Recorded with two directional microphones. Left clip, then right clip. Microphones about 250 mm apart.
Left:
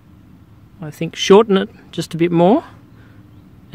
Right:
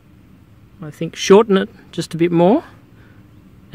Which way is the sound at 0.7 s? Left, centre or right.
Centre.